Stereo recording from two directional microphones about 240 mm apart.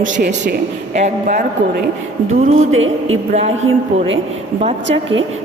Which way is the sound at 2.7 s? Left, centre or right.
Right.